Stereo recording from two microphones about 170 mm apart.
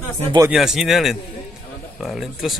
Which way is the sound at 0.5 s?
Centre (ahead or behind).